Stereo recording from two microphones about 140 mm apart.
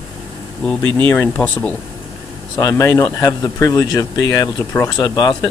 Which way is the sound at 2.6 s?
25° left (ahead or behind).